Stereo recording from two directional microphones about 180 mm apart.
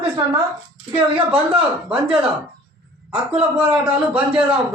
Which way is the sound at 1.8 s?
5° right (ahead or behind).